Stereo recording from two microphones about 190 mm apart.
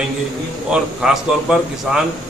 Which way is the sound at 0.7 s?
5° right (ahead or behind).